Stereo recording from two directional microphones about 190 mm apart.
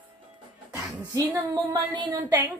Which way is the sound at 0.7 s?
10° right (ahead or behind).